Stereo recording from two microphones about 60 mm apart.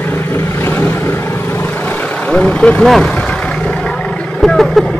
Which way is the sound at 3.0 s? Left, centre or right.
Centre.